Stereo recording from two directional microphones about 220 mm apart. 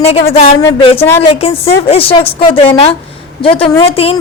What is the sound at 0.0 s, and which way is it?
A woman's voice, 25° left (ahead or behind).